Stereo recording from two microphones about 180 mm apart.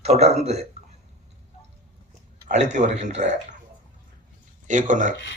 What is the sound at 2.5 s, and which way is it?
A man's voice, 40° right (ahead or behind).